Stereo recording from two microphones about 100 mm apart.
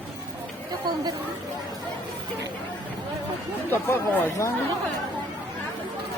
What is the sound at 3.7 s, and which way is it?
Speech, 20° left (ahead or behind).